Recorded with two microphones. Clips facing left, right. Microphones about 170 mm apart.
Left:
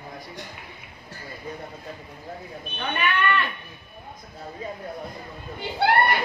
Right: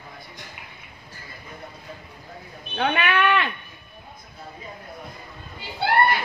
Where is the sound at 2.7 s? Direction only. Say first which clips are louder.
Right 4 dB; 85° right; by 3.5 s 70° right (ahead or behind).